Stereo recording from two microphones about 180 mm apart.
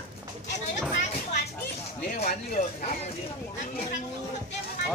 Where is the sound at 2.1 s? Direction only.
55° left (ahead or behind).